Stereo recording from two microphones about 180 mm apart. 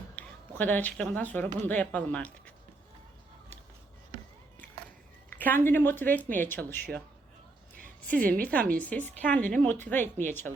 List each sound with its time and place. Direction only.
0.2 s speech: 10° left (ahead or behind)
5.4 s speech: 10° left (ahead or behind)
8.1 s speech: 10° left (ahead or behind)